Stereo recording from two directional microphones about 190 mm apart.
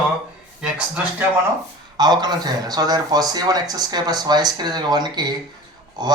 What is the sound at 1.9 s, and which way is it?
Speech, 20° right (ahead or behind).